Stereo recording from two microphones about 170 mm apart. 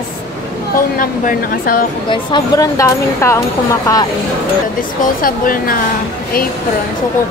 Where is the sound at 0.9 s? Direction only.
55° left (ahead or behind).